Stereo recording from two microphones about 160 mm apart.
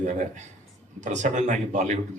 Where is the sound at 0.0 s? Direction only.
50° right (ahead or behind).